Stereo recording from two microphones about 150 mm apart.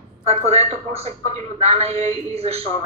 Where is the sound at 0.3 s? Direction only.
45° right (ahead or behind).